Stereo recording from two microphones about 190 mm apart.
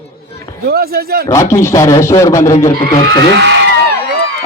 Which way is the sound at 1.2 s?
15° left (ahead or behind).